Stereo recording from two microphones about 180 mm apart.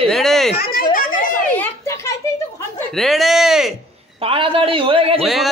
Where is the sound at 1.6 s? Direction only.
15° left (ahead or behind).